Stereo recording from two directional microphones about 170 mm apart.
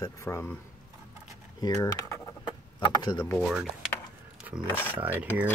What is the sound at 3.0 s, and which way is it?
Speech, 25° left (ahead or behind).